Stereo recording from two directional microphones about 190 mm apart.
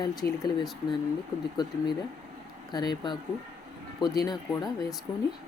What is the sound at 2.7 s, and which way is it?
Speech, 25° left (ahead or behind).